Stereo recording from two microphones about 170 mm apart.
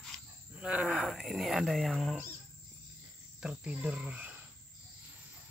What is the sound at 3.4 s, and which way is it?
Speech, 5° right (ahead or behind).